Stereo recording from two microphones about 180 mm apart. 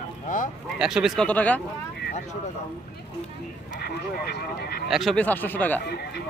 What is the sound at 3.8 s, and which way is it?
Speech, 65° left (ahead or behind).